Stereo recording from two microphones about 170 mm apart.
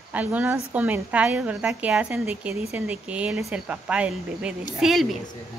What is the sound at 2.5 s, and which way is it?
Speech, 35° left (ahead or behind).